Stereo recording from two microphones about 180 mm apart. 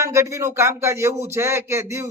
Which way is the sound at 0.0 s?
15° right (ahead or behind).